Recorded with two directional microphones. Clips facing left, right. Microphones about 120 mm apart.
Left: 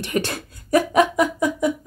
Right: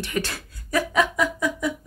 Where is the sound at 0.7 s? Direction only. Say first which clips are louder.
Left 6 dB; 50° left (ahead or behind).